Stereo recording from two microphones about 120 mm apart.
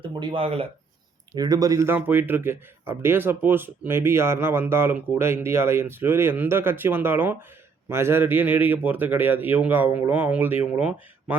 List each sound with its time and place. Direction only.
0.1 s speech: 40° right (ahead or behind)
0.4 s speech: 55° right (ahead or behind)
1.4 s a man's voice: 30° right (ahead or behind); by 11.3 s 10° right (ahead or behind)